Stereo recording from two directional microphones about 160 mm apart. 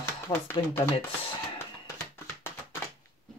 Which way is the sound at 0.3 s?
25° left (ahead or behind).